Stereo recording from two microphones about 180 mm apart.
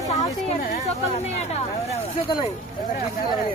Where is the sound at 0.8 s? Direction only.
35° left (ahead or behind).